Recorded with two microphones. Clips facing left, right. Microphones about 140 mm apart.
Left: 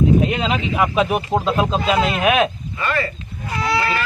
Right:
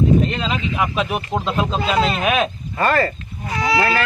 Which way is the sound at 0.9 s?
20° left (ahead or behind).